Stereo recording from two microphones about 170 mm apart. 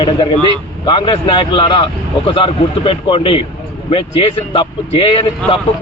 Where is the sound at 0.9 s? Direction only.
30° left (ahead or behind).